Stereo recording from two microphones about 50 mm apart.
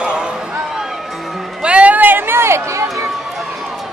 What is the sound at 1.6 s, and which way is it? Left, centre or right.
Run, right.